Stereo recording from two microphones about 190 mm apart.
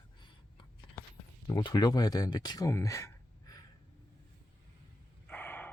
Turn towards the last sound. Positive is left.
turn(degrees=10)  # may be behind; listen again after turning